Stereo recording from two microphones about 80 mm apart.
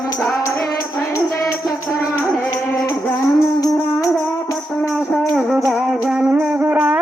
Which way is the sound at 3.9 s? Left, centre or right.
Left.